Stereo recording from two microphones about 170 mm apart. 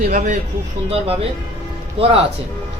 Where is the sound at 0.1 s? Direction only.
50° right (ahead or behind).